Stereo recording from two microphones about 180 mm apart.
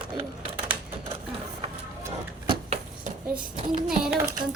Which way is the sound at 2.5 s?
35° right (ahead or behind).